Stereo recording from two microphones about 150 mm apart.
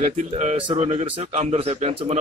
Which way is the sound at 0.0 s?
45° right (ahead or behind).